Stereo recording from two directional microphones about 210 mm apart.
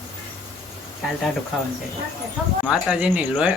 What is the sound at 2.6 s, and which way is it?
Speech, 5° right (ahead or behind).